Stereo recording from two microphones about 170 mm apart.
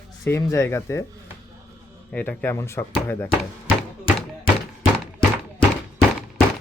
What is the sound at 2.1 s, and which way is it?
Speech, 10° left (ahead or behind).